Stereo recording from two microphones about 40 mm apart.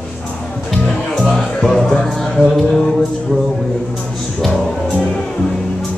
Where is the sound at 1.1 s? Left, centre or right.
Centre.